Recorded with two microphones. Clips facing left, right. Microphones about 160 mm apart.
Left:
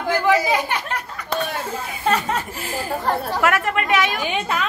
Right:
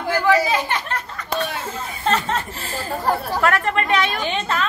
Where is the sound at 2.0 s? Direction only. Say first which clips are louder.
Even; 10° left (ahead or behind).